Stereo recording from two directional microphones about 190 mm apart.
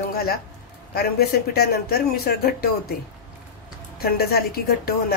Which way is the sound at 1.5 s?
55° left (ahead or behind).